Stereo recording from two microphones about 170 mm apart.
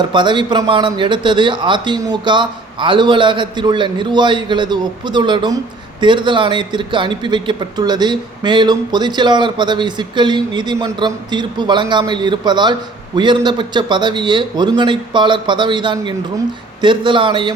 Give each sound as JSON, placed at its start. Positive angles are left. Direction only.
{"t": 0.1, "sound": "a man's voice", "side_deg": -25}